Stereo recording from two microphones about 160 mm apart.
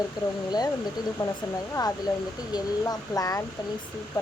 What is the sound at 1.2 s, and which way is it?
Speech, 25° left (ahead or behind).